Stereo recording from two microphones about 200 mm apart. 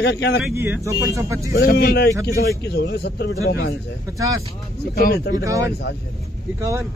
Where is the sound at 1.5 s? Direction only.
50° left (ahead or behind).